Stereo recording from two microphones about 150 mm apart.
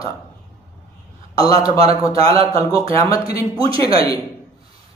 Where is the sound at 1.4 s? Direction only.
25° left (ahead or behind).